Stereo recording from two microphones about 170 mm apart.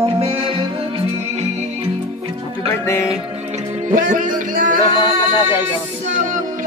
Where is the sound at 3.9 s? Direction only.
50° right (ahead or behind).